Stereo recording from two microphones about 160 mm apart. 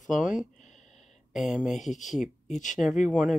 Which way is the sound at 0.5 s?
50° left (ahead or behind).